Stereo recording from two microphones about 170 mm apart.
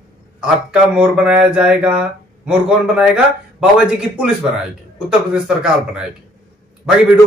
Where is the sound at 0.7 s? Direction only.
5° right (ahead or behind).